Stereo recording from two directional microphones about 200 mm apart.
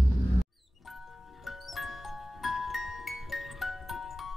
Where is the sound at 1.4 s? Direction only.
Centre (ahead or behind).